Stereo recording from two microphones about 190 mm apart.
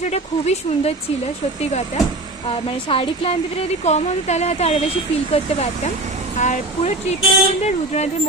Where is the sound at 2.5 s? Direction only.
30° left (ahead or behind).